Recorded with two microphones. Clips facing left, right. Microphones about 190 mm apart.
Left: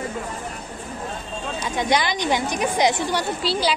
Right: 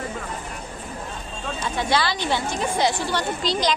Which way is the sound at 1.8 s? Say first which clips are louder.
Left 2 dB; 15° left (ahead or behind).